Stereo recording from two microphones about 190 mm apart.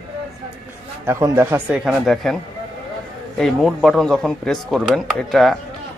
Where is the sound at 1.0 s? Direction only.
15° right (ahead or behind).